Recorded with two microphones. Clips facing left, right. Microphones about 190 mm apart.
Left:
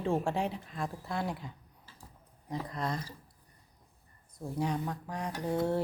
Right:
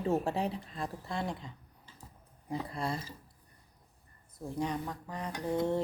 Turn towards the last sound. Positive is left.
turn(degrees=10)  # may be behind; listen again after turning